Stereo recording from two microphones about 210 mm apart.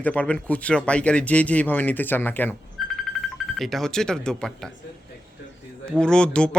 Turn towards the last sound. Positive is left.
turn(degrees=5)  # may be behind; listen again after turning